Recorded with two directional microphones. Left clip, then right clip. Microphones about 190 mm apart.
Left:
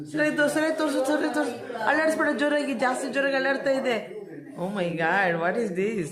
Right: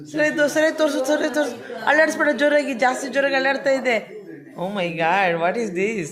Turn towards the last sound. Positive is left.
turn(degrees=-10)  # may be behind; listen again after turning